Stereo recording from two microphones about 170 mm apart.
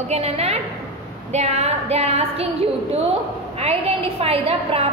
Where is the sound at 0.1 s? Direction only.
35° right (ahead or behind).